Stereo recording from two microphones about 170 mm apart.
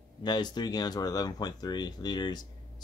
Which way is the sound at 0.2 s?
25° left (ahead or behind).